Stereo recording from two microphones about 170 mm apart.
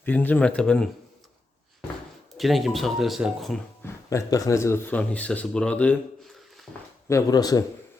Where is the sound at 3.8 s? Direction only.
15° left (ahead or behind); by 6.7 s centre (ahead or behind).